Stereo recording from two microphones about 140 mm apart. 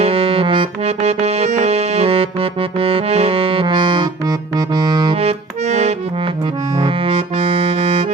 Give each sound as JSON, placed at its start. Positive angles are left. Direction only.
{"t": 0.0, "sound": "music", "side_deg": -40}
{"t": 5.1, "sound": "accordion", "side_deg": -50}
{"t": 6.8, "sound": "music", "side_deg": -40}